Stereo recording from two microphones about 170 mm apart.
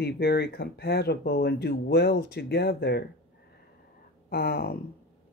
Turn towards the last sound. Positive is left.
turn(degrees=65)  # may be behind; listen again after turning